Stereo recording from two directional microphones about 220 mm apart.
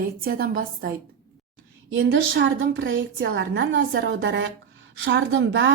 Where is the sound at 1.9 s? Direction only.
55° right (ahead or behind).